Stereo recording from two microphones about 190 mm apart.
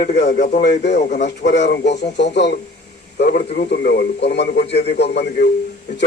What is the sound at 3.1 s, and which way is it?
A man's voice, 55° left (ahead or behind).